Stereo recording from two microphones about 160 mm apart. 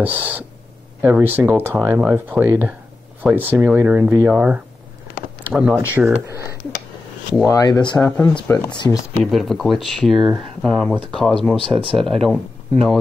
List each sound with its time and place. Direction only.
0.0 s speech: 10° right (ahead or behind)
7.4 s speech: 25° left (ahead or behind)
8.0 s speech: 10° left (ahead or behind)
8.9 s speech: centre (ahead or behind)